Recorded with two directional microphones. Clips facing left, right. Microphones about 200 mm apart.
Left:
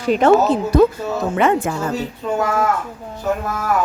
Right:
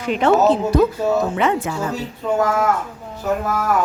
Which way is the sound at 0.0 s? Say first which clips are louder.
Left 3 dB; 40° left (ahead or behind).